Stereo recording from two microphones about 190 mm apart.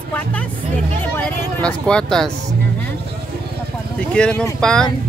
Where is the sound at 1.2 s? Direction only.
5° left (ahead or behind).